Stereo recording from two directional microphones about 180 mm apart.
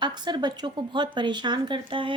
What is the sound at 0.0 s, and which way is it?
Speech, 25° right (ahead or behind).